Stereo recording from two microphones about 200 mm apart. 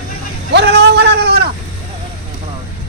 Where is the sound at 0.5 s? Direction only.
55° right (ahead or behind).